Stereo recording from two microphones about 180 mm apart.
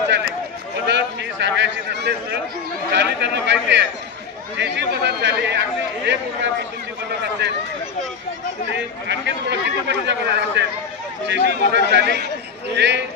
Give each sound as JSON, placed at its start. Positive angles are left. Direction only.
{"t": 0.9, "sound": "a sound", "side_deg": -80}
{"t": 2.9, "sound": "speech", "side_deg": -70}
{"t": 8.7, "sound": "speech", "side_deg": -75}